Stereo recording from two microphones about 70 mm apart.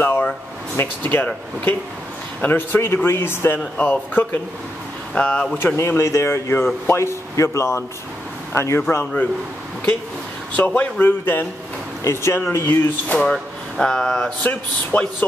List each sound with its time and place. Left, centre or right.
0.0 s a sound: left
0.7 s speech: left
3.5 s speech: left
5.1 s speech: centre
5.8 s speech: left
10.5 s speech: left
12.0 s speech: left
13.2 s speech: centre
14.4 s speech: left